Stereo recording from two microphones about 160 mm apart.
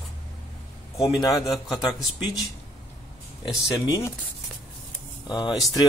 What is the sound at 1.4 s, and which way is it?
Speech, centre (ahead or behind).